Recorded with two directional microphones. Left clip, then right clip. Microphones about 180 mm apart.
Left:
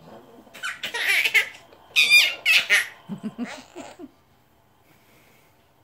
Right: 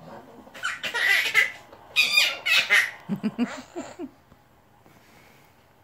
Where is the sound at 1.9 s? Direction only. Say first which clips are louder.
Left 4 dB; 20° left (ahead or behind).